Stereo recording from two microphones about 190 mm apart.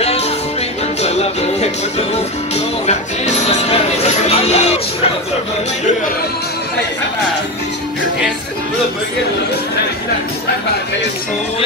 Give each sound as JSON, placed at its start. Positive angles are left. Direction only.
{"t": 0.0, "sound": "music", "side_deg": 35}